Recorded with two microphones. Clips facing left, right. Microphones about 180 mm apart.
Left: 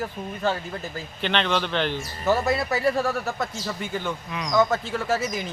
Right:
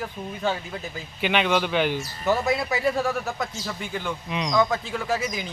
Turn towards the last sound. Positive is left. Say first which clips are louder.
# left 1 dB
turn(degrees=5)  # may be behind; listen again after turning